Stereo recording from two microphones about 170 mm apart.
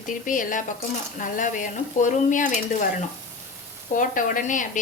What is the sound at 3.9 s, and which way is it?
Speech, 50° left (ahead or behind).